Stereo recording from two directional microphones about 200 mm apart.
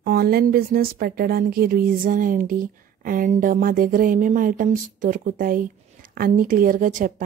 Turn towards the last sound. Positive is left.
turn(degrees=-45)  # may be behind; listen again after turning